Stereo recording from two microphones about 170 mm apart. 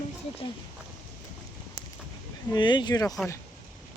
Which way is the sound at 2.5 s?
25° left (ahead or behind).